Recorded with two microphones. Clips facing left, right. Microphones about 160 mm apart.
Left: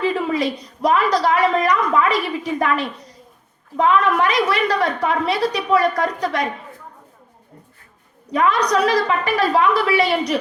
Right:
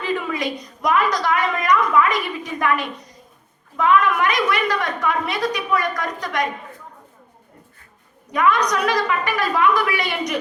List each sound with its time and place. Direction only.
0.3 s a woman's voice: 30° left (ahead or behind)
8.3 s a woman's voice: 30° left (ahead or behind)